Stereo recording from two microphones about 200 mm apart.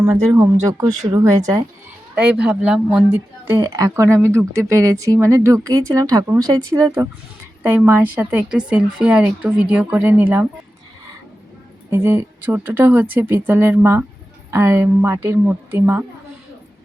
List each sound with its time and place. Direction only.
0.0 s speech: 15° right (ahead or behind)
11.9 s speech: 10° right (ahead or behind)